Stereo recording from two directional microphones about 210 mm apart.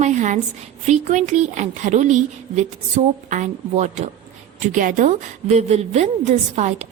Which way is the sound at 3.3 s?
35° right (ahead or behind).